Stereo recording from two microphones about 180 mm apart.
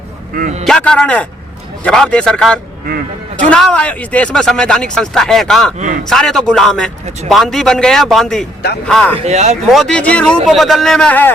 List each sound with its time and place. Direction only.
0.3 s a man's voice: 45° right (ahead or behind)
0.6 s speech: 5° left (ahead or behind)
9.1 s speech: 40° right (ahead or behind)
9.7 s speech: 5° left (ahead or behind)